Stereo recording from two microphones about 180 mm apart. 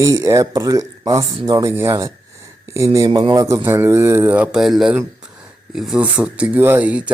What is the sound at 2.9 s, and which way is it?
Speech, 20° right (ahead or behind).